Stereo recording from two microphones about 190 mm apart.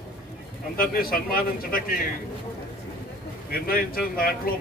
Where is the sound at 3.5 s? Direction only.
50° left (ahead or behind).